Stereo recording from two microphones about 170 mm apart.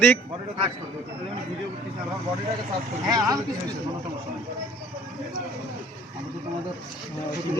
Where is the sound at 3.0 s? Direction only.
20° right (ahead or behind).